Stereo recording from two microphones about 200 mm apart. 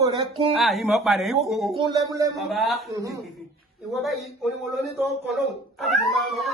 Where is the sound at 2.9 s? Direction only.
15° right (ahead or behind).